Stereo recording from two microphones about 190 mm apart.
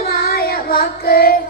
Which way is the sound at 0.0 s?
55° left (ahead or behind).